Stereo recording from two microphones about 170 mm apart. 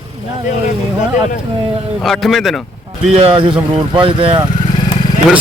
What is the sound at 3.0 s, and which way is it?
Speech, 35° right (ahead or behind).